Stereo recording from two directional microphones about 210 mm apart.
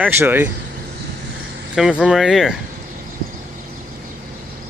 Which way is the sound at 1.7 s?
Centre (ahead or behind).